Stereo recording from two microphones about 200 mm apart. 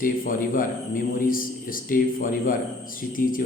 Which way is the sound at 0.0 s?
45° left (ahead or behind).